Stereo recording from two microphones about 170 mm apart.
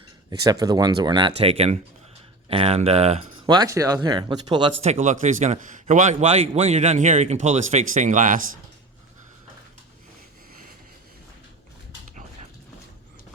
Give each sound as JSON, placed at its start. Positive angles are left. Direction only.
{"t": 0.3, "sound": "a man's voice", "side_deg": -20}
{"t": 3.4, "sound": "speech", "side_deg": -25}
{"t": 4.8, "sound": "a man's voice", "side_deg": -40}